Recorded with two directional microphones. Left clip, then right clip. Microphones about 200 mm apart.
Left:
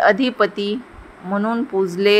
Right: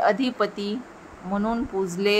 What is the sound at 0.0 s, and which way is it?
A woman's voice, 15° left (ahead or behind).